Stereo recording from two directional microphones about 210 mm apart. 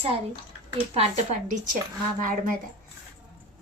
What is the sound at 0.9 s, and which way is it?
Speech, 35° right (ahead or behind).